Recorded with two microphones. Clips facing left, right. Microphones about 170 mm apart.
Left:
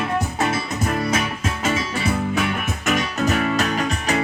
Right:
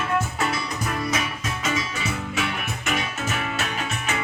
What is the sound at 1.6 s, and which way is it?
Music, 30° left (ahead or behind).